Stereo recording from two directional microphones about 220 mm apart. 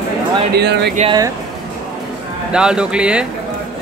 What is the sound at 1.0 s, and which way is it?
Speech, 20° right (ahead or behind).